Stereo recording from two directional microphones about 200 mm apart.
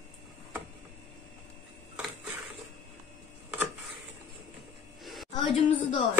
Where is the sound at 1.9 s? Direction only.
10° right (ahead or behind).